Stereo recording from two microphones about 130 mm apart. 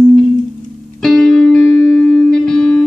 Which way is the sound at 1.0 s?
5° left (ahead or behind).